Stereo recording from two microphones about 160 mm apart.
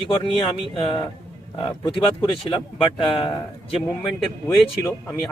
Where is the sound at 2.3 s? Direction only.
30° left (ahead or behind).